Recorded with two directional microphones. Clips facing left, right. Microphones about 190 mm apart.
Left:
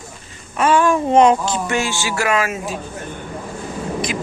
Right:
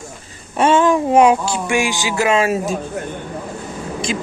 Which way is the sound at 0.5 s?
25° right (ahead or behind).